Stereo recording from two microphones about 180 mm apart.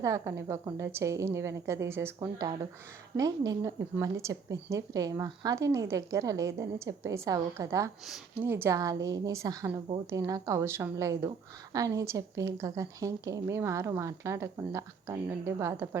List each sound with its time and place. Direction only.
0.0 s speech: 15° right (ahead or behind)
8.0 s speech: centre (ahead or behind)
8.4 s a woman's voice: 15° right (ahead or behind)